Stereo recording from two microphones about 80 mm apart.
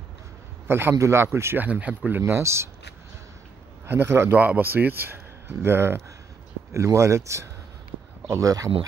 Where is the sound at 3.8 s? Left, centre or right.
Right.